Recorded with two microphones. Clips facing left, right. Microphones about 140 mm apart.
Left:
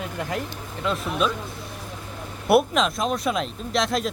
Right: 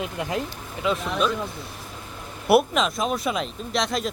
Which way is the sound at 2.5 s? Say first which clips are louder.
Even; centre (ahead or behind).